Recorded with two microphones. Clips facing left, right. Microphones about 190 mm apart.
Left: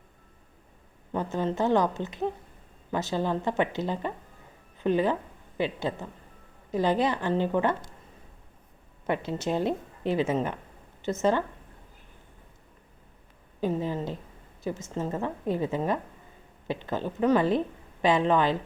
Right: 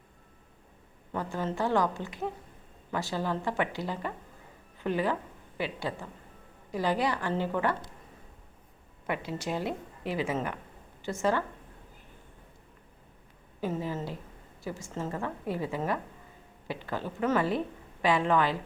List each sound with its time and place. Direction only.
1.1 s a woman's voice: 20° left (ahead or behind)
9.0 s a woman's voice: 25° left (ahead or behind)
13.6 s a woman's voice: 15° left (ahead or behind)